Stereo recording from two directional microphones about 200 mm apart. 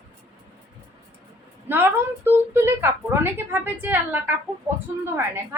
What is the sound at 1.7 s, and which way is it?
A woman's voice, 10° right (ahead or behind).